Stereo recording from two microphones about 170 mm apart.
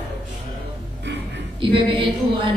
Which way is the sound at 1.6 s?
30° right (ahead or behind).